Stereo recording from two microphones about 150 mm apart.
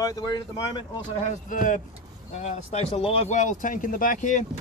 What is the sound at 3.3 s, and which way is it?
Speech, 60° left (ahead or behind).